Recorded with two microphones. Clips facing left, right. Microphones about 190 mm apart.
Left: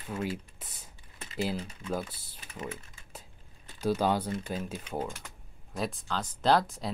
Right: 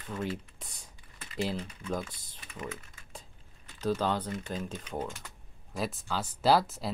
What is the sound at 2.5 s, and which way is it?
Speech, 25° left (ahead or behind).